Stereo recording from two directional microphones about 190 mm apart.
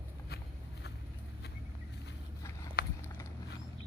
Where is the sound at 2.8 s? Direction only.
50° left (ahead or behind).